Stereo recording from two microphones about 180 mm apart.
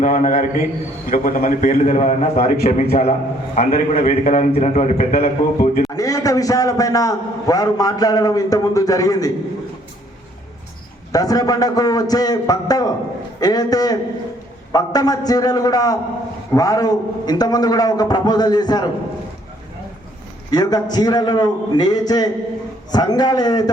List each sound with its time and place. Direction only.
0.0 s a man's voice: 45° left (ahead or behind)
5.9 s a man's voice: 20° left (ahead or behind)
11.1 s a man's voice: 20° left (ahead or behind)
20.5 s a man's voice: 20° left (ahead or behind)